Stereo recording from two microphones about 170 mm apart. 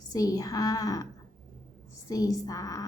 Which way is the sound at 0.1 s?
20° left (ahead or behind).